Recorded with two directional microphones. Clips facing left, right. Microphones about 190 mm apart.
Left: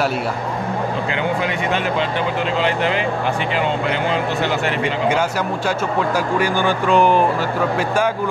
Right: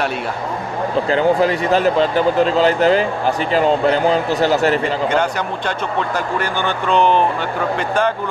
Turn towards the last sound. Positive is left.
turn(degrees=10)  # may be behind; listen again after turning